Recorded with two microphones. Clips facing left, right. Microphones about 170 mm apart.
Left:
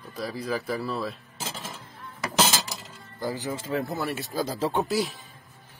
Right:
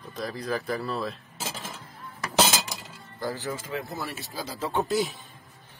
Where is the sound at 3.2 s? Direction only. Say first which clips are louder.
Left 1 dB; 15° left (ahead or behind).